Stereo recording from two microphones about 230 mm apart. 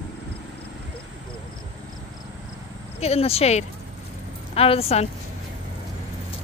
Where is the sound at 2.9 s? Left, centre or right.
Left.